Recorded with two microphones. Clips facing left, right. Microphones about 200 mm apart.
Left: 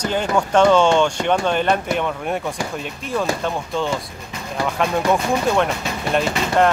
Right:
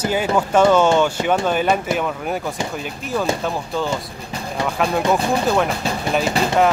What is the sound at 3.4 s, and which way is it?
Speech, centre (ahead or behind).